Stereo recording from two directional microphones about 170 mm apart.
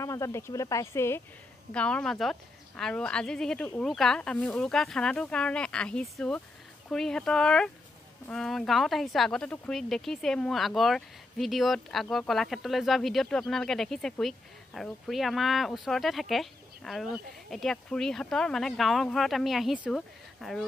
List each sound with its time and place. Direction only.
0.0 s speech: 20° left (ahead or behind); by 20.6 s centre (ahead or behind)